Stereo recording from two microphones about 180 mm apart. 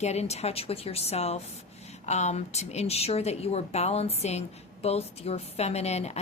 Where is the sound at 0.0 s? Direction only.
35° left (ahead or behind).